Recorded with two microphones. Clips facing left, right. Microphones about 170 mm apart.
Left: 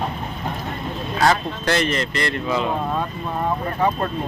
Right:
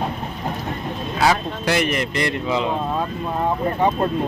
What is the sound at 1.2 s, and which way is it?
Speech, 10° right (ahead or behind).